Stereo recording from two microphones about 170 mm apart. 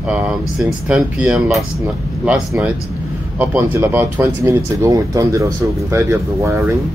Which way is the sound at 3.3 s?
10° right (ahead or behind).